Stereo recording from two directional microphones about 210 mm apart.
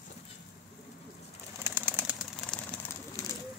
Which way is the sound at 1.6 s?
10° right (ahead or behind).